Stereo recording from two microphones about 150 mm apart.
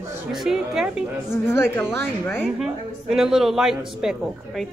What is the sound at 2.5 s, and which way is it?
A woman's voice, 5° right (ahead or behind).